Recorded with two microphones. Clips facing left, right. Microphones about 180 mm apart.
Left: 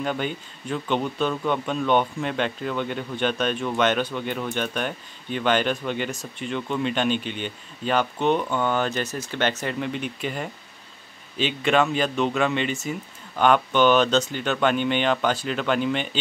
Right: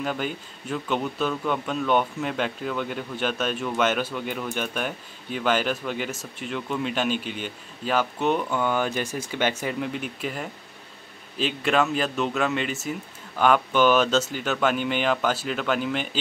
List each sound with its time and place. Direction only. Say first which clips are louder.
0.0 s speech: left 1 dB; 5° right (ahead or behind)